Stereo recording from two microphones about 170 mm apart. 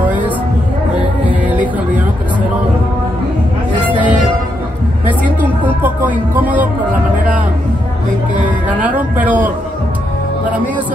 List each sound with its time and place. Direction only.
3.8 s music: 30° left (ahead or behind)
5.8 s music: 10° right (ahead or behind)
8.6 s a sound: 10° right (ahead or behind)